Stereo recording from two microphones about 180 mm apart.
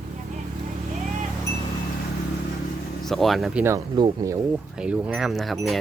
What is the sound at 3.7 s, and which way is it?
Speech, 20° right (ahead or behind).